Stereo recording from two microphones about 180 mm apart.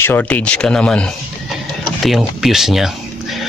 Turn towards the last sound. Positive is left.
turn(degrees=0)  # may be behind; listen again after turning